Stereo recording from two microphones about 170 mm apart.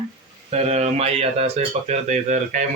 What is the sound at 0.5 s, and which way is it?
Speech, 40° right (ahead or behind).